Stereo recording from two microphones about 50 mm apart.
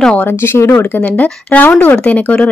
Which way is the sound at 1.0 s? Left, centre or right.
Left.